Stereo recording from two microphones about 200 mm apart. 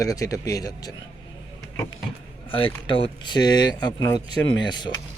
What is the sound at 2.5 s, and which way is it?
Speech, 25° left (ahead or behind).